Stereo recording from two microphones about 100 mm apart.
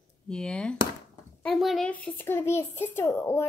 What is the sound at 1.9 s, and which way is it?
Speech, 15° left (ahead or behind).